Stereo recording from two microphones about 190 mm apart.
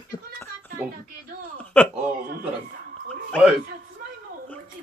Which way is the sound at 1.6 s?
10° left (ahead or behind).